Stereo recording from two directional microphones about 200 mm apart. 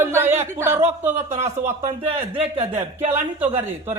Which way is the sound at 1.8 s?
30° right (ahead or behind).